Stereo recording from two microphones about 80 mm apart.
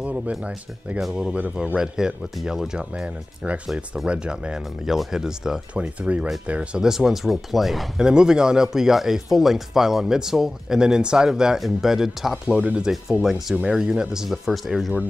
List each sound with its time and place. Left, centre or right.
0.0 s speech: centre
5.8 s speech: centre